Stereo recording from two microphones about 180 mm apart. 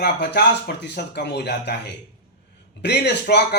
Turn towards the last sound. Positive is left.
turn(degrees=65)  # may be behind; listen again after turning